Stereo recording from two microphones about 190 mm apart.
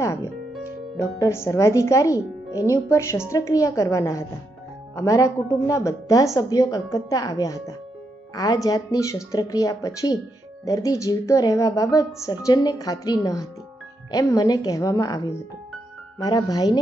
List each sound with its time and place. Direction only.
0.0 s music: 15° left (ahead or behind)
1.2 s a woman's voice: 15° left (ahead or behind)